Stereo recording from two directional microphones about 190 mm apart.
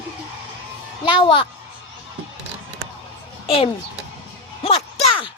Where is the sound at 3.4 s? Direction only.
30° left (ahead or behind).